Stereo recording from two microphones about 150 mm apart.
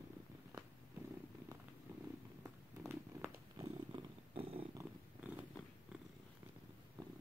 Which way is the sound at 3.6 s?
30° right (ahead or behind).